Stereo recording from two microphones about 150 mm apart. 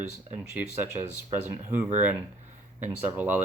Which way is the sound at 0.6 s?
15° right (ahead or behind).